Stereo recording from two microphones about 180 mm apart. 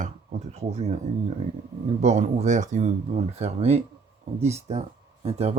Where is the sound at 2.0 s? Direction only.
40° right (ahead or behind).